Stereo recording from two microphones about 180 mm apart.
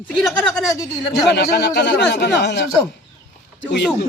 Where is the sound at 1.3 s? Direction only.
65° left (ahead or behind).